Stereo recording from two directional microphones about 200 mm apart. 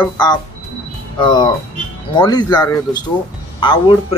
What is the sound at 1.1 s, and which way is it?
Speech, 20° left (ahead or behind).